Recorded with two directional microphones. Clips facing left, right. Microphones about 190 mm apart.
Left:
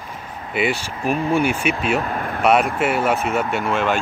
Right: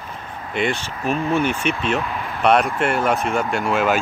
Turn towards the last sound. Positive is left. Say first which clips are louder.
# right 1 dB
turn(degrees=0)  # may be behind; listen again after turning